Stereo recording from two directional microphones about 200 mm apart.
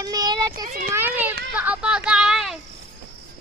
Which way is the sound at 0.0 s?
20° right (ahead or behind).